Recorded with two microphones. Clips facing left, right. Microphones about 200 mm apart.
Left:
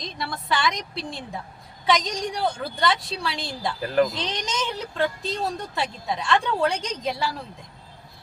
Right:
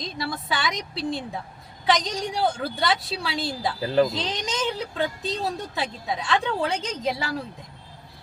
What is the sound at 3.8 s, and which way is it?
Speech, 25° right (ahead or behind).